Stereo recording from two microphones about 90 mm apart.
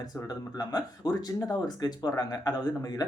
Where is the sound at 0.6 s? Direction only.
45° left (ahead or behind).